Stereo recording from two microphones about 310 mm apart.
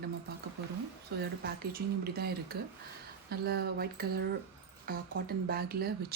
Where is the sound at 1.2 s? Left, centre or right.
Right.